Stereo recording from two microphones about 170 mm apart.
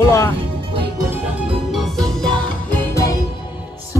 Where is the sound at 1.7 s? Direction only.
Centre (ahead or behind).